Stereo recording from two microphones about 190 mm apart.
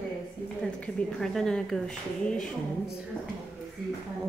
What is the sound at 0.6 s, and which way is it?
A woman's voice, 5° left (ahead or behind).